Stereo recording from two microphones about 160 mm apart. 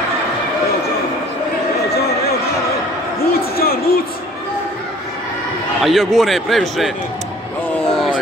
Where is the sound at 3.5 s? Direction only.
70° left (ahead or behind).